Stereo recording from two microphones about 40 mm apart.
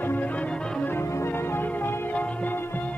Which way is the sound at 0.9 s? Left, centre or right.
Left.